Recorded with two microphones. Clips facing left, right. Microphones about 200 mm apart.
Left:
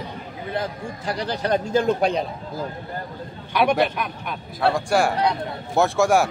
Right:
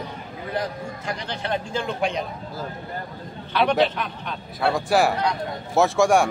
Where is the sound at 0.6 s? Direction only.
35° left (ahead or behind).